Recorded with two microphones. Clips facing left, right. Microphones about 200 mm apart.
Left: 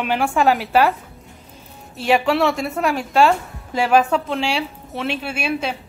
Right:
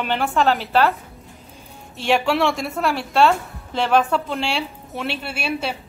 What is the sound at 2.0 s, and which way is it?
A woman's voice, 5° left (ahead or behind).